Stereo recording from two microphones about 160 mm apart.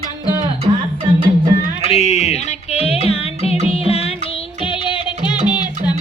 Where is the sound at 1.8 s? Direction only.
45° left (ahead or behind); by 5.9 s 25° left (ahead or behind).